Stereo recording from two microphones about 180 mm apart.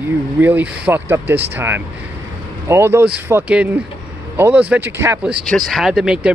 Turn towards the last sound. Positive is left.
turn(degrees=-5)  # may be behind; listen again after turning